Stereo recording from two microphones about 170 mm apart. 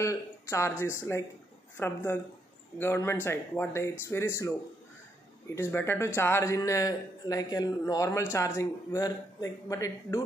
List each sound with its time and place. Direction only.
0.0 s a man's voice: 15° left (ahead or behind)